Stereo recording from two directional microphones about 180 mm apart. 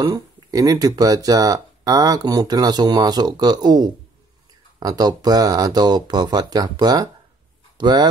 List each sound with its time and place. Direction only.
0.0 s speech: 20° right (ahead or behind)